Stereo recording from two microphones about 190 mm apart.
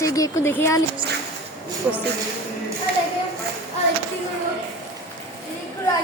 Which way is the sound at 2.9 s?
55° right (ahead or behind).